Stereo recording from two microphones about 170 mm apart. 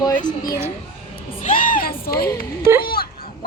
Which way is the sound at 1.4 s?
50° left (ahead or behind).